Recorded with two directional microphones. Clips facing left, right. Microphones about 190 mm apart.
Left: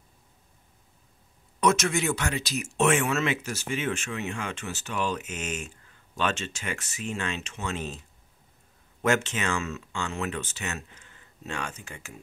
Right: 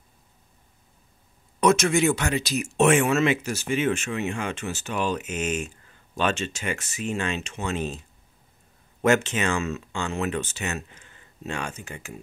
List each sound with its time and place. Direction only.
1.6 s speech: 15° right (ahead or behind)
9.0 s speech: 15° right (ahead or behind)